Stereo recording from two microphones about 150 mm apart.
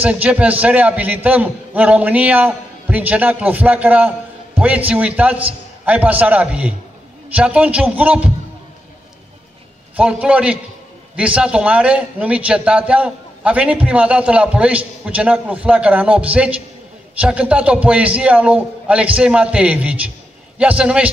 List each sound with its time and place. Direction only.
0.0 s a man's voice: 10° right (ahead or behind)
9.9 s a man's voice: 10° right (ahead or behind)